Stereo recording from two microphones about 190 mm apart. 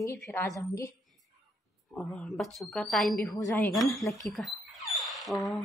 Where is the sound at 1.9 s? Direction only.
5° left (ahead or behind).